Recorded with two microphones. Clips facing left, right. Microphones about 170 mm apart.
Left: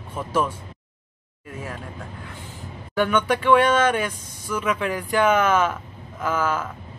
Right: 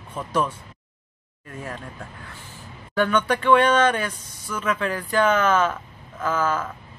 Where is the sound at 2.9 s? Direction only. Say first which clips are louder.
Even; 10° left (ahead or behind).